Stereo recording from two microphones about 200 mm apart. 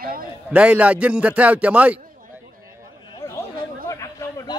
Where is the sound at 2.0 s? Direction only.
45° right (ahead or behind).